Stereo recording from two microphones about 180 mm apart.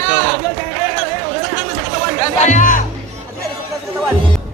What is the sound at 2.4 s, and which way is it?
Speech, 45° left (ahead or behind).